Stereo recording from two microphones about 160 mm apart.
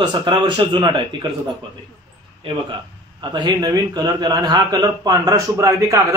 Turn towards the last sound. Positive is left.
turn(degrees=-20)  # may be behind; listen again after turning